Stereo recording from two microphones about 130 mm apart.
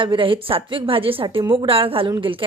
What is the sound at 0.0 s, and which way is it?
A woman's voice, 40° right (ahead or behind).